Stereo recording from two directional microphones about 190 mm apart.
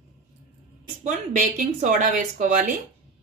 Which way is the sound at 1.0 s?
40° right (ahead or behind).